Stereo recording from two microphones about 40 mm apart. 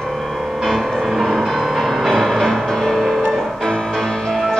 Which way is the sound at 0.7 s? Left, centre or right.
Centre.